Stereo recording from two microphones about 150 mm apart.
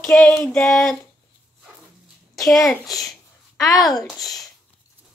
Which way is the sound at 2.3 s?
Centre (ahead or behind).